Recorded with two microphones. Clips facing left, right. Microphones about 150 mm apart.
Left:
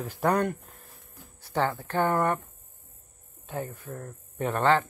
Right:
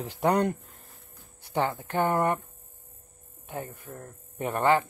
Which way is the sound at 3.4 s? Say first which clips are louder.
Left 2 dB; 15° right (ahead or behind).